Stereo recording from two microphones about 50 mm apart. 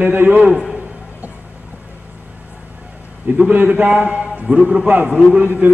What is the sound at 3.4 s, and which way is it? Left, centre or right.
A man's voice, right.